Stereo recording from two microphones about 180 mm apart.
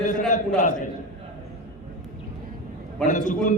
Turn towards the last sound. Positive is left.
turn(degrees=45)  # may be behind; listen again after turning